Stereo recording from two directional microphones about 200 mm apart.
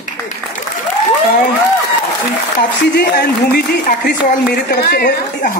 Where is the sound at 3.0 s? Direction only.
55° left (ahead or behind).